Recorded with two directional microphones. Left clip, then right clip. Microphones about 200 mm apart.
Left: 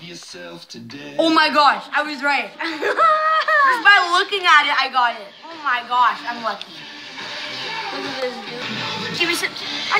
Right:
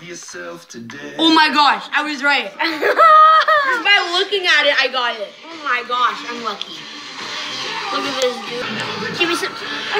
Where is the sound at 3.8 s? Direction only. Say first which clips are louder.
Left 1 dB; 25° left (ahead or behind).